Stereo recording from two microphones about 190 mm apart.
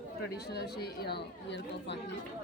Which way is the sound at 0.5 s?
55° left (ahead or behind).